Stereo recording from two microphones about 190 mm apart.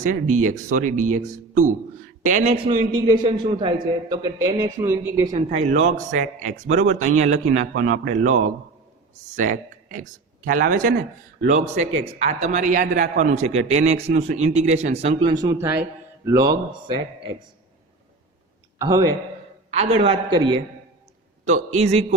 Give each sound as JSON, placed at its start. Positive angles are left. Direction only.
{"t": 0.0, "sound": "speech", "side_deg": -40}
{"t": 3.1, "sound": "a man's voice", "side_deg": -25}
{"t": 5.3, "sound": "a man's voice", "side_deg": -40}
{"t": 18.8, "sound": "a man's voice", "side_deg": -20}
{"t": 19.7, "sound": "a man's voice", "side_deg": -30}
{"t": 21.4, "sound": "speech", "side_deg": -40}